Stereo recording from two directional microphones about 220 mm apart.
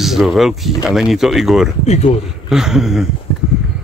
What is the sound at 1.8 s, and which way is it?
Speech, 30° left (ahead or behind).